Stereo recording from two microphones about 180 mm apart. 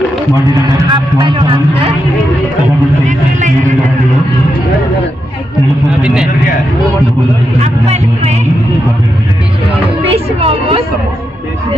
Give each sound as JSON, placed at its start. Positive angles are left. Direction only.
{"t": 0.5, "sound": "speech", "side_deg": -25}
{"t": 3.1, "sound": "music", "side_deg": -45}
{"t": 6.0, "sound": "a man's voice", "side_deg": -5}
{"t": 7.6, "sound": "speech", "side_deg": -35}
{"t": 10.1, "sound": "speech", "side_deg": -35}